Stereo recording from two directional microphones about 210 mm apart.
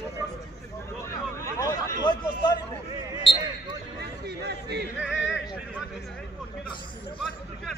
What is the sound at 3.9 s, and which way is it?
Chatter, 50° right (ahead or behind).